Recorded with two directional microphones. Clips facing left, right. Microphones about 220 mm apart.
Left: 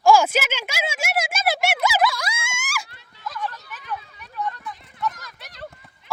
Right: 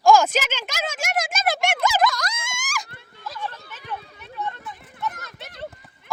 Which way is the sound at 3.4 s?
30° right (ahead or behind).